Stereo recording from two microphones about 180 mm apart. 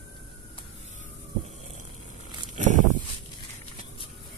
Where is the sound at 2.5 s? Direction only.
45° right (ahead or behind).